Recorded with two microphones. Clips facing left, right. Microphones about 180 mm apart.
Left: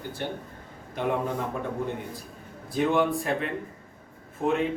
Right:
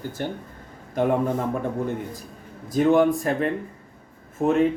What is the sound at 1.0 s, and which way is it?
Speech, 45° right (ahead or behind).